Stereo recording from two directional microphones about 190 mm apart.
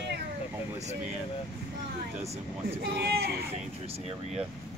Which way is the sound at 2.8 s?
60° right (ahead or behind).